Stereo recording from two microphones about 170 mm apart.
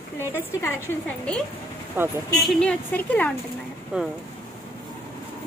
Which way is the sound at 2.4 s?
5° left (ahead or behind).